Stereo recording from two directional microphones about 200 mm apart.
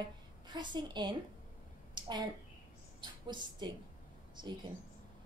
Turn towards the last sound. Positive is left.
turn(degrees=-20)  # may be behind; listen again after turning